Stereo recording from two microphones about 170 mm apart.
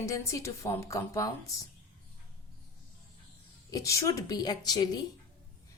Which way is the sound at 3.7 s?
20° left (ahead or behind).